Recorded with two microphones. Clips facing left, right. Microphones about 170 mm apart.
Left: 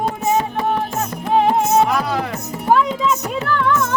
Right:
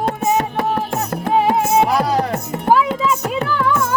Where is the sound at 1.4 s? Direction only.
5° right (ahead or behind).